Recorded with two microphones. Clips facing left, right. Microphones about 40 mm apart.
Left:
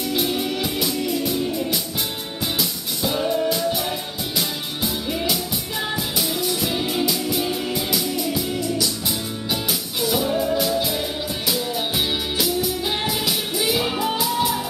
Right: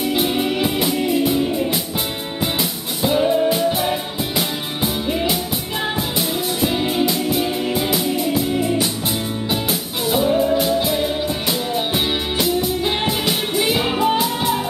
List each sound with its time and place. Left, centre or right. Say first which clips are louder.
0.1 s music: right 2 dB; right
3.0 s music: right 5 dB; right
9.5 s music: right 1 dB; right